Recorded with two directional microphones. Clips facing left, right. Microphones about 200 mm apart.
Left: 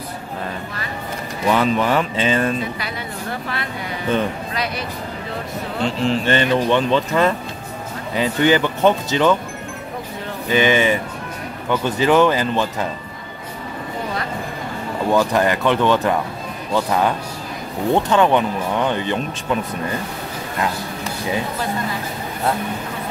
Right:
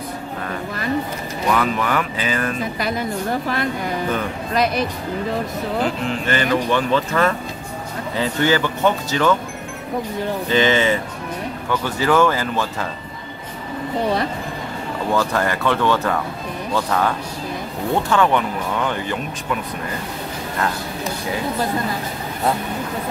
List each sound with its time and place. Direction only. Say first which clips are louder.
1.5 s speech: left 3 dB; 30° left (ahead or behind)
5.9 s speech: left 3 dB; 30° left (ahead or behind)
10.5 s speech: left 1 dB; 15° left (ahead or behind)
15.1 s speech: left 4 dB; 15° left (ahead or behind)